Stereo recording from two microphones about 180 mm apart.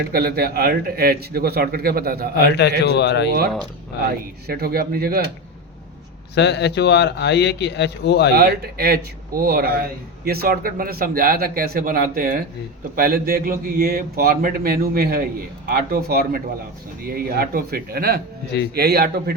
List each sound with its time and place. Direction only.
0.1 s a man's voice: 60° right (ahead or behind)
2.6 s a man's voice: 70° left (ahead or behind)
4.4 s a man's voice: 60° right (ahead or behind)
6.3 s a man's voice: 70° left (ahead or behind)
8.4 s a man's voice: 60° right (ahead or behind)